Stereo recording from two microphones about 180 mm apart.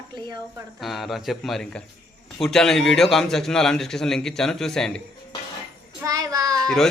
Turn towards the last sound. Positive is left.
turn(degrees=0)  # may be behind; listen again after turning